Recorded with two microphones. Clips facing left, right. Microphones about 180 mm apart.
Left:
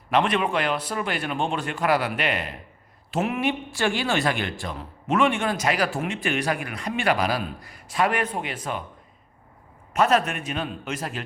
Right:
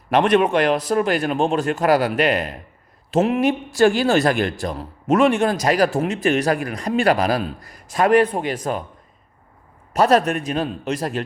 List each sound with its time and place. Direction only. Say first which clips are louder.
0.1 s speech: right 6 dB; 45° right (ahead or behind)
9.9 s speech: right 5 dB; 40° right (ahead or behind)